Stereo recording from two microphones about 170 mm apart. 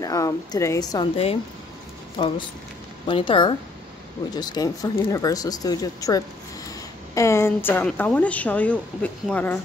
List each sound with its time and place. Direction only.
0.0 s speech: 20° left (ahead or behind)
1.1 s a woman's voice: 35° left (ahead or behind); by 9.6 s 10° left (ahead or behind)